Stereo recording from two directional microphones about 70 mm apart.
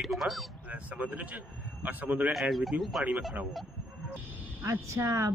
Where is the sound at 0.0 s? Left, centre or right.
Centre.